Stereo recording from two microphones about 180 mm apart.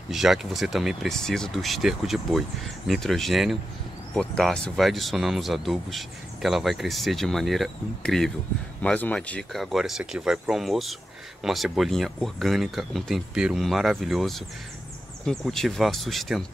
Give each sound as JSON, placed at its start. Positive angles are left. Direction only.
{"t": 0.1, "sound": "speech", "side_deg": 0}